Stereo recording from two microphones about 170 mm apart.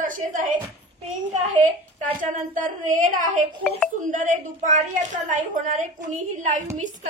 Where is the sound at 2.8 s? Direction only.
50° right (ahead or behind).